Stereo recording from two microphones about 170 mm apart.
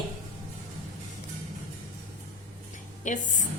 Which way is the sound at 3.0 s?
50° left (ahead or behind).